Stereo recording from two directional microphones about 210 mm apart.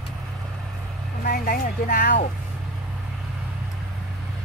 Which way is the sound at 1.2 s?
45° left (ahead or behind).